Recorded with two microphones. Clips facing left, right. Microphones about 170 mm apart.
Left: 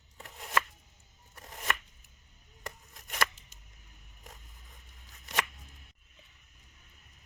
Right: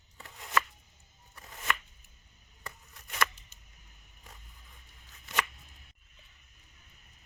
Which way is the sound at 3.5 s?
90° left.